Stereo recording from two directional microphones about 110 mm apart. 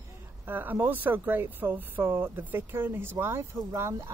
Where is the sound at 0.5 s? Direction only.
15° right (ahead or behind).